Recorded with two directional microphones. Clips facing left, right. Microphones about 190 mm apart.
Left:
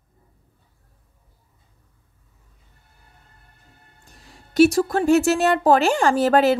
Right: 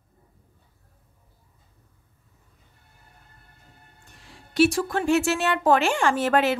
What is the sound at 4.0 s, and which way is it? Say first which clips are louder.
A woman's voice: left 1 dB; 40° left (ahead or behind).